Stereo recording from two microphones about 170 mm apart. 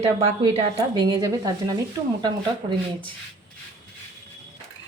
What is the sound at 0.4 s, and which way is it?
Speech, 25° right (ahead or behind).